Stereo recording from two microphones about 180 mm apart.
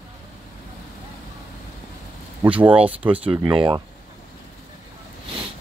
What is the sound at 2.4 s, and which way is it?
Speech, 10° right (ahead or behind).